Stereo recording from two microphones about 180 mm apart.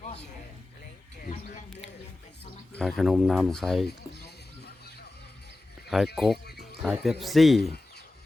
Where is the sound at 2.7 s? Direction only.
Centre (ahead or behind).